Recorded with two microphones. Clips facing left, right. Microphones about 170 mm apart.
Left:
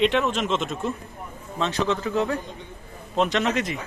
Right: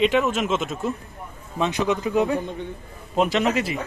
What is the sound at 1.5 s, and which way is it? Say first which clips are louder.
A man's voice: right 2 dB; 15° right (ahead or behind).